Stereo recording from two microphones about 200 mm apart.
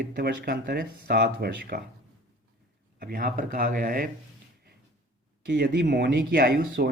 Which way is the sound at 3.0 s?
50° right (ahead or behind).